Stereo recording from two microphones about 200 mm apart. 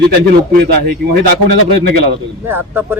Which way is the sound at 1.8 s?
50° right (ahead or behind).